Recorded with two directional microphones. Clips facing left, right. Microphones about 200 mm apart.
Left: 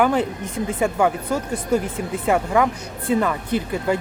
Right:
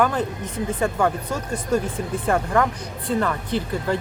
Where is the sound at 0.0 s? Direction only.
10° left (ahead or behind).